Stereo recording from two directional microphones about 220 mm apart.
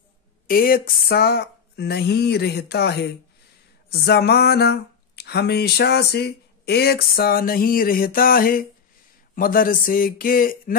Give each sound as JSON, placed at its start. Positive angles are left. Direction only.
{"t": 0.5, "sound": "speech", "side_deg": 40}